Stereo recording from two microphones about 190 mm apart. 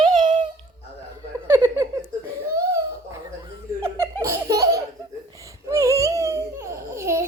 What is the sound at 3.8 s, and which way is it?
Laughter, 15° right (ahead or behind).